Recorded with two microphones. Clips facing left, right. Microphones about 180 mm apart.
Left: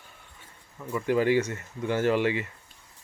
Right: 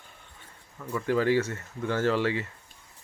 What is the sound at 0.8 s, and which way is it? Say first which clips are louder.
Speech: left 1 dB; 15° left (ahead or behind).